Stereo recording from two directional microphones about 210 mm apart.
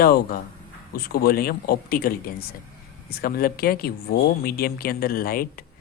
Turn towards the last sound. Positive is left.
turn(degrees=45)  # may be behind; listen again after turning